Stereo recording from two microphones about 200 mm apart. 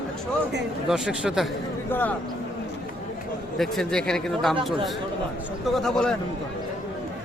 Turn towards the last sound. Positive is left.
turn(degrees=5)  # may be behind; listen again after turning